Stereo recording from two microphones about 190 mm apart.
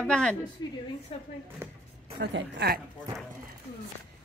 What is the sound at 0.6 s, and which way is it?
Speech, 20° left (ahead or behind).